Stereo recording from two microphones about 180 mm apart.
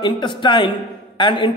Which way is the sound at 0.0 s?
25° left (ahead or behind).